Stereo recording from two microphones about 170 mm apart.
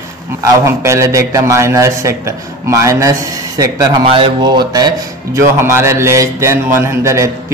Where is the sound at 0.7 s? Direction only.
15° right (ahead or behind).